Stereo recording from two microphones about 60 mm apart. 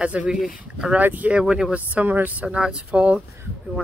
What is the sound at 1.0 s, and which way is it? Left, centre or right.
Speech, right.